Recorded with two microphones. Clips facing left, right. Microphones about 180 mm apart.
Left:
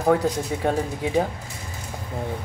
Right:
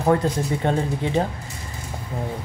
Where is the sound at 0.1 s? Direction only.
5° left (ahead or behind).